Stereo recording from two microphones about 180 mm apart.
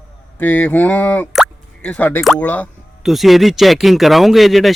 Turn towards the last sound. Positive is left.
turn(degrees=0)  # may be behind; listen again after turning